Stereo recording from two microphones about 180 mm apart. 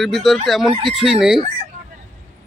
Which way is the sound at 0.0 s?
Centre (ahead or behind).